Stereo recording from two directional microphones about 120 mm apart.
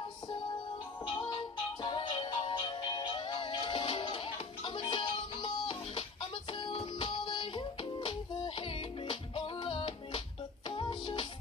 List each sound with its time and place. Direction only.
1.8 s music: 40° left (ahead or behind)